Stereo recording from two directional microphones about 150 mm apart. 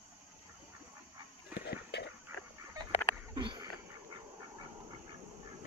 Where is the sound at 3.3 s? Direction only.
30° right (ahead or behind).